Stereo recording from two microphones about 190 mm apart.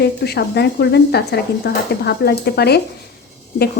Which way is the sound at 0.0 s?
55° left (ahead or behind).